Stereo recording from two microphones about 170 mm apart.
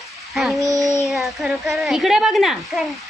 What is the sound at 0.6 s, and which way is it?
Child singing, 20° right (ahead or behind).